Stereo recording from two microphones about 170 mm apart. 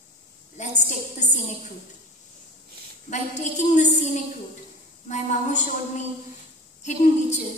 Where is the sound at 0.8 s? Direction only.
45° left (ahead or behind).